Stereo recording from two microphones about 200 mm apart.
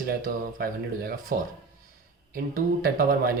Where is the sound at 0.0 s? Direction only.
45° right (ahead or behind).